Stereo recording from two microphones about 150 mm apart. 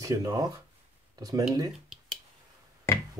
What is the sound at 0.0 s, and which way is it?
Speech, 25° right (ahead or behind).